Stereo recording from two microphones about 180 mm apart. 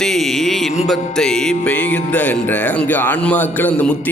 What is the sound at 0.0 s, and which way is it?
Music, centre (ahead or behind).